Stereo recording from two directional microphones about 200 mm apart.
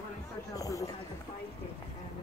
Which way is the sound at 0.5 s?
15° left (ahead or behind).